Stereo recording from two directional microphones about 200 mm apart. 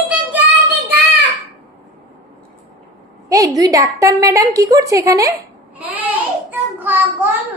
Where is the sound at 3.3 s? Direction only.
15° right (ahead or behind).